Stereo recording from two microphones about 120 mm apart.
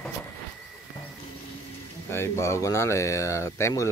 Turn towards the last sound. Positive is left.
turn(degrees=25)  # may be behind; listen again after turning